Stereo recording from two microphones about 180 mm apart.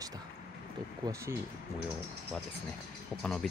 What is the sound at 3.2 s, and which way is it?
Speech, 5° left (ahead or behind).